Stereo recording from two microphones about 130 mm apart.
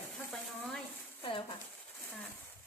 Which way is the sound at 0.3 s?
Centre (ahead or behind).